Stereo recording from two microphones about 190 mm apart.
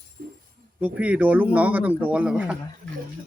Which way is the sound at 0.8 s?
5° right (ahead or behind).